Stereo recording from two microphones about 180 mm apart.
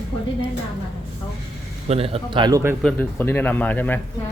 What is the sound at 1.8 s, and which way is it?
Speech, 35° right (ahead or behind).